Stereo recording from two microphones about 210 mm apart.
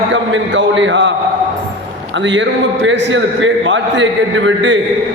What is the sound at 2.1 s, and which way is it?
A man's voice, 60° right (ahead or behind).